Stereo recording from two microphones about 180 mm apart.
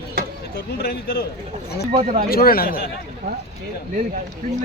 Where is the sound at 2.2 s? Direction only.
55° left (ahead or behind).